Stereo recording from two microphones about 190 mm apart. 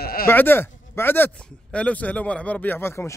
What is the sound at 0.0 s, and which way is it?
Bleat, 50° left (ahead or behind).